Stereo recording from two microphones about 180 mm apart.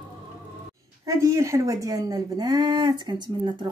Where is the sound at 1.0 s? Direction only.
15° right (ahead or behind).